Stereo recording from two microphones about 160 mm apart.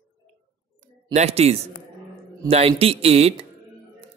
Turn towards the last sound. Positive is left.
turn(degrees=-40)  # may be behind; listen again after turning